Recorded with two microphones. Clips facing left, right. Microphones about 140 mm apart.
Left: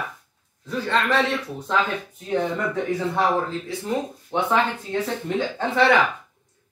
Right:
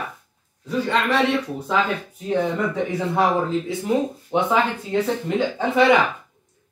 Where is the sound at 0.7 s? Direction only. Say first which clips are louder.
Right 2 dB; 10° right (ahead or behind).